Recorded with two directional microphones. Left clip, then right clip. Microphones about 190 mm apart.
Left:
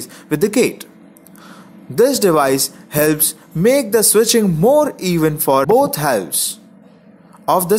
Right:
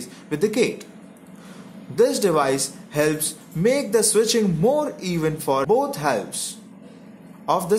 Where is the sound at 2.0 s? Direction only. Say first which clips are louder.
Left 6 dB; 35° left (ahead or behind).